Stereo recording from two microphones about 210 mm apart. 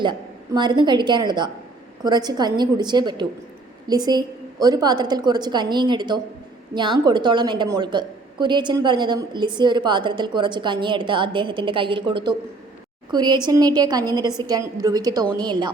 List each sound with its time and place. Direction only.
0.0 s a woman's voice: 20° right (ahead or behind)